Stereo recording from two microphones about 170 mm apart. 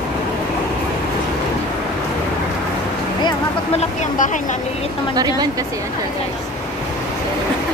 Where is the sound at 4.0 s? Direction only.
50° left (ahead or behind).